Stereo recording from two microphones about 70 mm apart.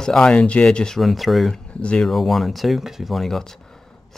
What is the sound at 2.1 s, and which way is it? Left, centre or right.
Speech, centre.